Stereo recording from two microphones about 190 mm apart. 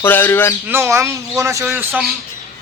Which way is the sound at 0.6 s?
10° right (ahead or behind).